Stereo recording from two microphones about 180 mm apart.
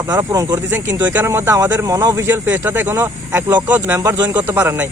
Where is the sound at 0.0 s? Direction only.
20° right (ahead or behind).